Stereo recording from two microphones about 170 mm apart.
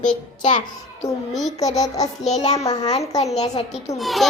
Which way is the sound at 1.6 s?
20° left (ahead or behind).